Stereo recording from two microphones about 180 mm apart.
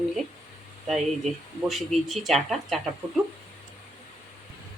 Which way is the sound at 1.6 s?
Centre (ahead or behind).